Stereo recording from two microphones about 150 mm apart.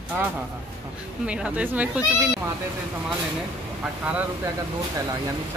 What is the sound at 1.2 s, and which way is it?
Speech, 5° right (ahead or behind).